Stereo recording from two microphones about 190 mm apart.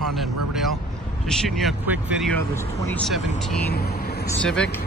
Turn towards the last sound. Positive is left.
turn(degrees=5)  # may be behind; listen again after turning